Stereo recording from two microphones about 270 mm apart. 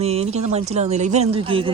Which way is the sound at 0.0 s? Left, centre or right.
Right.